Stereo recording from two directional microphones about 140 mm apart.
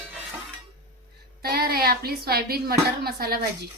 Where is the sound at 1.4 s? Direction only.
90° right.